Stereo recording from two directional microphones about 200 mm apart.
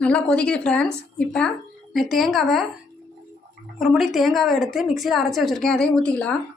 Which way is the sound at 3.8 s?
Centre (ahead or behind).